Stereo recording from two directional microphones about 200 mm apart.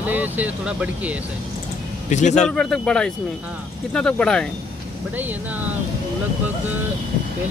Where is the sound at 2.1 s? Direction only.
35° left (ahead or behind).